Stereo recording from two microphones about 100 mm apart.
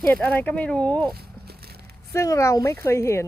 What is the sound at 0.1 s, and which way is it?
Speech, 20° left (ahead or behind).